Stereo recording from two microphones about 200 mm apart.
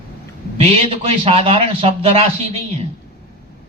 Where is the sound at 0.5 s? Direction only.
30° right (ahead or behind).